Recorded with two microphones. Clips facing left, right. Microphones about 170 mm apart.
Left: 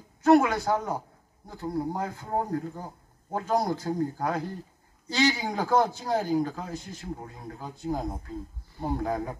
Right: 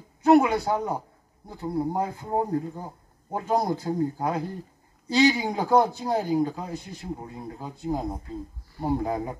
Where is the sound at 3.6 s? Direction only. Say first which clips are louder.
Right 2 dB; 10° right (ahead or behind).